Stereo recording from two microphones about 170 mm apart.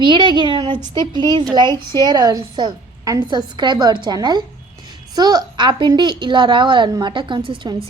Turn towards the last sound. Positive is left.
turn(degrees=-30)  # may be behind; listen again after turning